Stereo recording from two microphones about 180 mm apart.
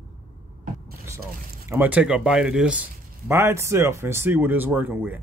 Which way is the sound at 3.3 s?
15° right (ahead or behind).